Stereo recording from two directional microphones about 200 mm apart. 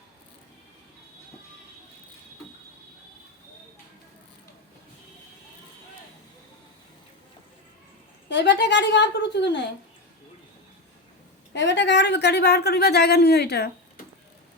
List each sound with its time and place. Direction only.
8.3 s a woman's voice: 60° left (ahead or behind)
11.5 s a woman's voice: 65° left (ahead or behind)